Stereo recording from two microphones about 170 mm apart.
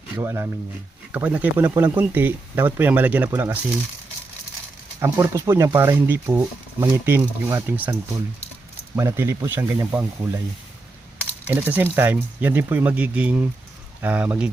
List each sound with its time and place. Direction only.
0.2 s speech: 15° right (ahead or behind)
4.9 s speech: 15° right (ahead or behind)
9.0 s speech: 15° right (ahead or behind)